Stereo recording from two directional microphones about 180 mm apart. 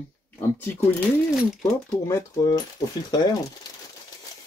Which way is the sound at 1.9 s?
15° left (ahead or behind).